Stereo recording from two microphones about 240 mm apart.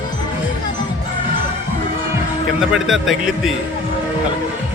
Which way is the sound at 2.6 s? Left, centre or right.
Centre.